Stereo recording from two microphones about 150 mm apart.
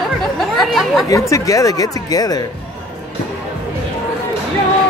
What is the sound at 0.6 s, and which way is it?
Speech, centre (ahead or behind).